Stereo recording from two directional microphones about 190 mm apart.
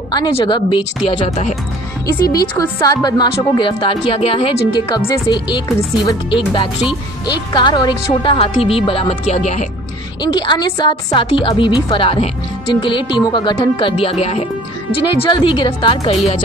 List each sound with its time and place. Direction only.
0.1 s speech: 25° left (ahead or behind)
2.5 s speech: 20° left (ahead or behind); by 9.7 s 35° left (ahead or behind)
10.2 s speech: 25° left (ahead or behind)